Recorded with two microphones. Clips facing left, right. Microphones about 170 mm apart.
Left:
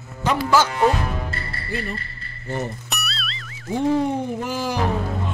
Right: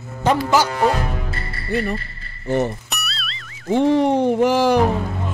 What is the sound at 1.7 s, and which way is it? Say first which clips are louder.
Speech: right 7 dB; 55° right (ahead or behind).